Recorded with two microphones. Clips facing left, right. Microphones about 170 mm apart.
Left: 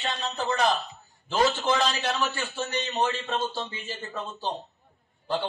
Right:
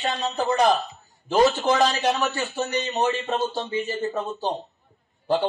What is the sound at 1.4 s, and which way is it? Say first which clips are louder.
A man's voice: right 5 dB; 15° right (ahead or behind).